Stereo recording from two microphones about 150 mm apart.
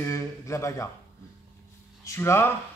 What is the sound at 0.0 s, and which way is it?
Speech, 20° left (ahead or behind).